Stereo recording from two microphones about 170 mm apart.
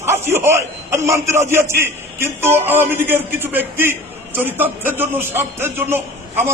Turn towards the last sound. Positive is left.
turn(degrees=-10)  # may be behind; listen again after turning